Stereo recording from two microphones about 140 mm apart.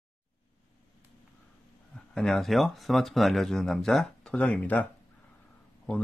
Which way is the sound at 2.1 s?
Centre (ahead or behind).